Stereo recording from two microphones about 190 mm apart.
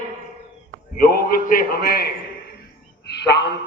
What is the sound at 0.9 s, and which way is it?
A man's voice, 50° left (ahead or behind).